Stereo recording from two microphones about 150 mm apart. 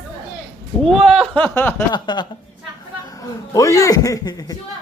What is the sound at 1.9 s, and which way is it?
Speech, 30° left (ahead or behind).